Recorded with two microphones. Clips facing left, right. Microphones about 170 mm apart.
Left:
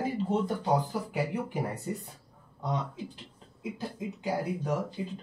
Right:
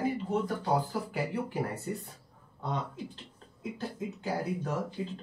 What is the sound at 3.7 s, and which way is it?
Speech, 15° left (ahead or behind).